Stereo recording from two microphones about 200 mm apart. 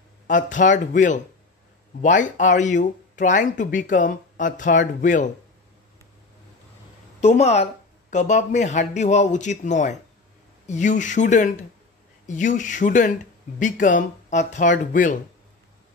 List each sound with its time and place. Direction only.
0.3 s speech: 40° left (ahead or behind)
7.2 s speech: 35° left (ahead or behind)